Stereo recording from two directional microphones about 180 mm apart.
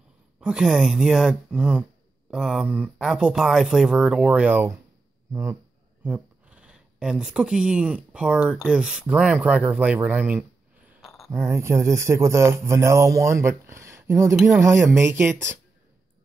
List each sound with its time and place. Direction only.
0.4 s speech: 5° right (ahead or behind)
11.1 s a sound: centre (ahead or behind)
11.3 s speech: 15° right (ahead or behind)